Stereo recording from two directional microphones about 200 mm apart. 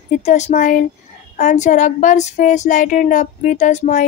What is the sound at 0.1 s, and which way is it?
Female singing, 35° left (ahead or behind).